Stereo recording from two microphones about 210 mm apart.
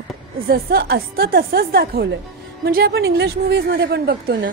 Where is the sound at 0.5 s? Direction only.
50° right (ahead or behind).